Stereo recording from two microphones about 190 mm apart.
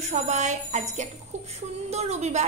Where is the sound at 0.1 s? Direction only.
40° right (ahead or behind).